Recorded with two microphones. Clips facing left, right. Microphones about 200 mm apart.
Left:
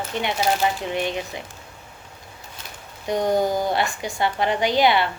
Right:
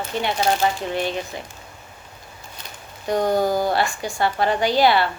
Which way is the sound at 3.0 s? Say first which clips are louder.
Right 1 dB; 20° left (ahead or behind).